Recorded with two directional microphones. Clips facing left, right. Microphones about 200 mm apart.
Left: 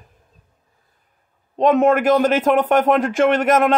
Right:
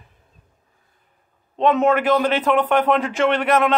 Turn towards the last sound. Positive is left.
turn(degrees=45)  # may be behind; listen again after turning